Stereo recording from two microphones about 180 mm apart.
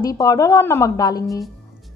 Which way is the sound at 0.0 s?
20° left (ahead or behind).